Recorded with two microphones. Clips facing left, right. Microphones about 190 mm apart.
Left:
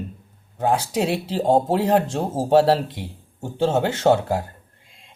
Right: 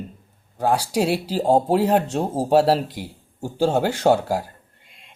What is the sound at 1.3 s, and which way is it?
Speech, 5° right (ahead or behind).